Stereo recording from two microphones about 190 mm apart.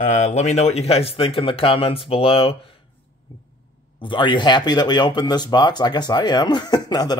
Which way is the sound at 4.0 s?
25° left (ahead or behind).